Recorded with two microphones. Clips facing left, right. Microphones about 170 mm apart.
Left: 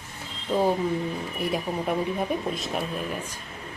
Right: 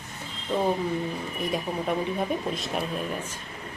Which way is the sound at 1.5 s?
5° left (ahead or behind).